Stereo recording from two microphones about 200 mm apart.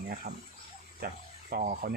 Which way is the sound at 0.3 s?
50° right (ahead or behind).